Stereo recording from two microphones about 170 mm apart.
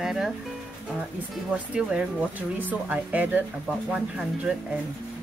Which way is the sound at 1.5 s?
5° right (ahead or behind).